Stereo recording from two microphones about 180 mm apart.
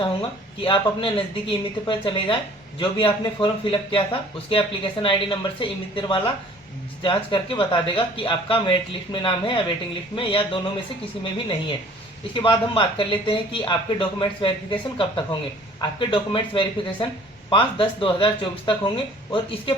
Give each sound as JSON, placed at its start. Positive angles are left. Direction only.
{"t": 0.0, "sound": "speech", "side_deg": 30}